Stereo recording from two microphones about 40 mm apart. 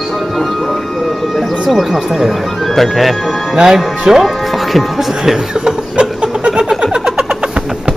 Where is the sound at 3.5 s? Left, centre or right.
Centre.